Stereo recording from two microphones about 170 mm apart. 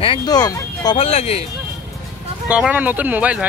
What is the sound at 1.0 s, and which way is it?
Speech, 35° left (ahead or behind).